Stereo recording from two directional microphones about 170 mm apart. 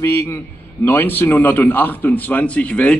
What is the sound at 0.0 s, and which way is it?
A man's voice, 15° left (ahead or behind).